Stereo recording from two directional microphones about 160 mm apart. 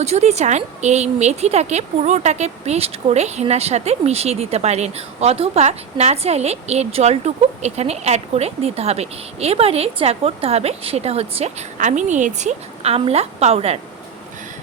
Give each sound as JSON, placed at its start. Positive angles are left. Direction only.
{"t": 0.0, "sound": "a woman's voice", "side_deg": -45}